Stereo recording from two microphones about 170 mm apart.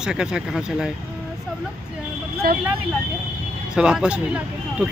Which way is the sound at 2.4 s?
60° right (ahead or behind).